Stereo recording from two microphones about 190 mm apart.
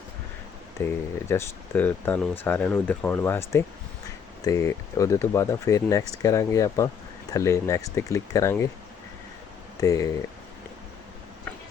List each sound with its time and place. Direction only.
0.8 s speech: 15° left (ahead or behind)
9.8 s speech: 15° left (ahead or behind)